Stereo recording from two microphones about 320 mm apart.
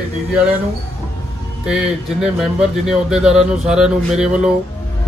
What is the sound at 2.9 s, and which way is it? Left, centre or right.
Speech, centre.